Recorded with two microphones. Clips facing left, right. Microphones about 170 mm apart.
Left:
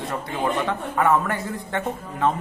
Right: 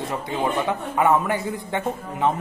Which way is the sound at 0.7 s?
15° right (ahead or behind).